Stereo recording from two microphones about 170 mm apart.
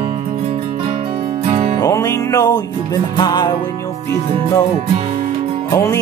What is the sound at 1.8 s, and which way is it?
Music, 15° left (ahead or behind).